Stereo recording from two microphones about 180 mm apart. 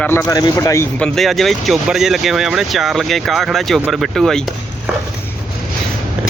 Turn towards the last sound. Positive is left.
turn(degrees=5)  # may be behind; listen again after turning